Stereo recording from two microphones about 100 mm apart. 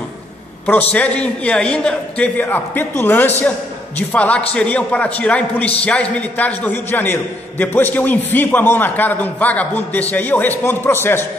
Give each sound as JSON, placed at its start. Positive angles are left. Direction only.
{"t": 0.7, "sound": "a man's voice", "side_deg": 15}